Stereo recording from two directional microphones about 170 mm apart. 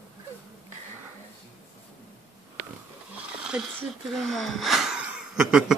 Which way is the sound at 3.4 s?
5° right (ahead or behind).